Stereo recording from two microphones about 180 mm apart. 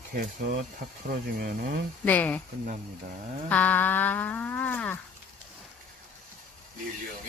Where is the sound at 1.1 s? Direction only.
55° right (ahead or behind).